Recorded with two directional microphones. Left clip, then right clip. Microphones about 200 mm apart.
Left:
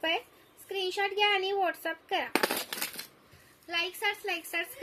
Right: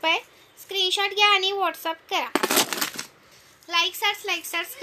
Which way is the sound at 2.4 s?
30° right (ahead or behind).